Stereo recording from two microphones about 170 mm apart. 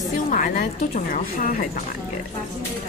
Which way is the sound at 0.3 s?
50° left (ahead or behind).